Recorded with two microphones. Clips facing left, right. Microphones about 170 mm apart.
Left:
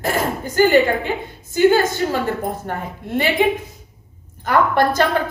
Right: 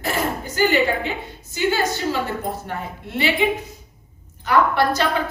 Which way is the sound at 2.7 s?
45° left (ahead or behind).